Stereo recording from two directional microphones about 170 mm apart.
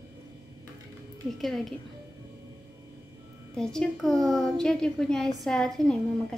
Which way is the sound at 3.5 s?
5° left (ahead or behind).